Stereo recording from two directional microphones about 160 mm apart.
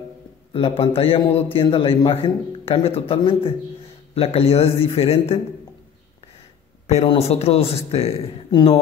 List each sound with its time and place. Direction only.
0.5 s speech: 35° left (ahead or behind)
6.9 s speech: 40° left (ahead or behind)